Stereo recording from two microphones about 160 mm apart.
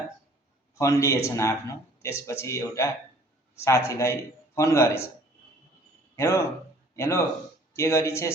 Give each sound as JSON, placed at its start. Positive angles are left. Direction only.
{"t": 0.8, "sound": "a man's voice", "side_deg": 20}
{"t": 6.1, "sound": "a man's voice", "side_deg": 20}